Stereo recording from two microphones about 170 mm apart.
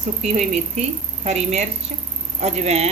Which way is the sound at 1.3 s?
40° right (ahead or behind).